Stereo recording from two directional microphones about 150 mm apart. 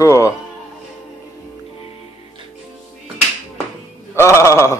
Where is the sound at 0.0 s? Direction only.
20° left (ahead or behind).